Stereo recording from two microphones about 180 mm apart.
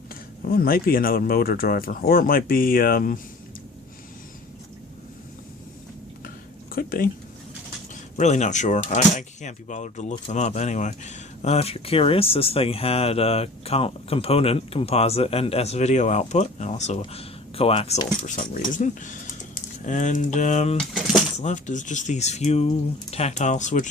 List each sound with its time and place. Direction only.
0.4 s speech: 55° left (ahead or behind)
6.7 s a sound: 55° left (ahead or behind)
8.1 s speech: 40° left (ahead or behind)
18.3 s speech: 45° left (ahead or behind)